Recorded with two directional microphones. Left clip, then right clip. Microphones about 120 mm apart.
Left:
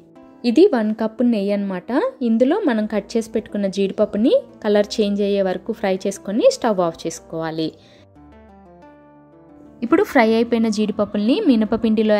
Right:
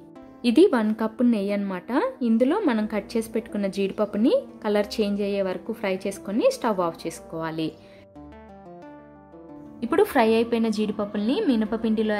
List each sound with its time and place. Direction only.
0.4 s a woman's voice: 20° left (ahead or behind)
9.8 s a woman's voice: 20° left (ahead or behind); by 12.2 s 40° left (ahead or behind)